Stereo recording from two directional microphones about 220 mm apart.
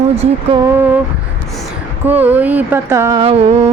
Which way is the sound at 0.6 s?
10° right (ahead or behind).